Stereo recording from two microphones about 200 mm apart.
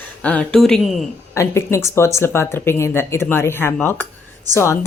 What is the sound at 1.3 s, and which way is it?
Speech, 15° left (ahead or behind).